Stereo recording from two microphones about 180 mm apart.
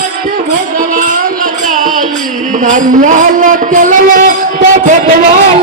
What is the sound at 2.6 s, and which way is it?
Speech, 45° right (ahead or behind).